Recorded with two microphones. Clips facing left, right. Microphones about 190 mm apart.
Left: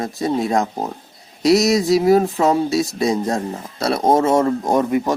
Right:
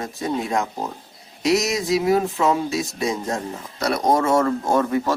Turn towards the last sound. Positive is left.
turn(degrees=15)  # may be behind; listen again after turning